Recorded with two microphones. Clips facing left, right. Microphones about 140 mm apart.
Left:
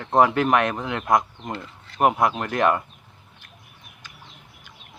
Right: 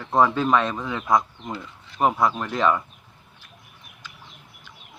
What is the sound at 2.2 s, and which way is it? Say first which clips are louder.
Speech: left 1 dB; 55° left (ahead or behind).